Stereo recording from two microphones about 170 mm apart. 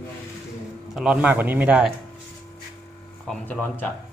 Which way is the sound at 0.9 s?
5° right (ahead or behind).